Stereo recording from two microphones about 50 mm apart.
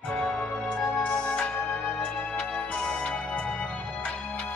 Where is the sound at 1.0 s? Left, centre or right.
Left.